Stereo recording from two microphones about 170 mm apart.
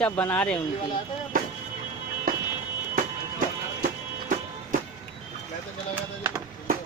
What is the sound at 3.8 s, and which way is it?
Music, 50° right (ahead or behind).